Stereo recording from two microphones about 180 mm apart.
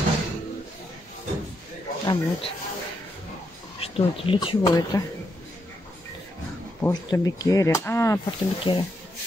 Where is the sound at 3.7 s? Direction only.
30° left (ahead or behind).